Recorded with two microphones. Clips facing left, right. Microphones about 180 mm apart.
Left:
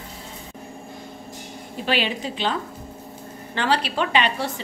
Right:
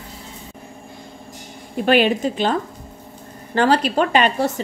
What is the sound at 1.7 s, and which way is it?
A woman's voice, 50° right (ahead or behind).